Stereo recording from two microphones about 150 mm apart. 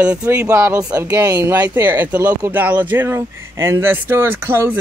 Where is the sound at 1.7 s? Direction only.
15° right (ahead or behind).